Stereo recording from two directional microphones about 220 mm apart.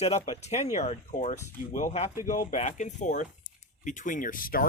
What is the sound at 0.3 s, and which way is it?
Speech, 30° left (ahead or behind).